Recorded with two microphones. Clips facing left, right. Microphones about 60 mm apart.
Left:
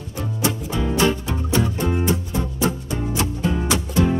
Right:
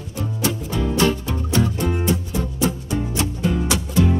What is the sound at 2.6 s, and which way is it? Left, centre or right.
Music, left.